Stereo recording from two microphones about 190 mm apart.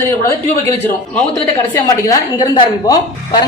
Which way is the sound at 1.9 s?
20° left (ahead or behind).